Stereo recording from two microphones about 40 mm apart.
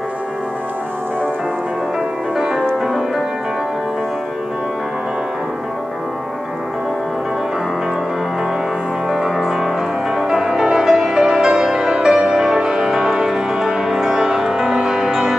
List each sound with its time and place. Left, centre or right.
2.3 s music: centre
9.1 s music: centre